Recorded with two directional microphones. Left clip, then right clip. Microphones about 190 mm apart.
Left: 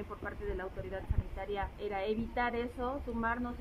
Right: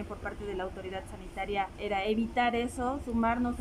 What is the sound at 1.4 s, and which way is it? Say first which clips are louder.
A woman's voice: right 6 dB; 15° right (ahead or behind).